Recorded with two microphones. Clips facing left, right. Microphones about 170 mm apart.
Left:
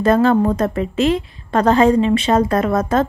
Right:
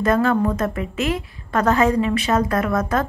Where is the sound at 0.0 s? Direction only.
30° left (ahead or behind).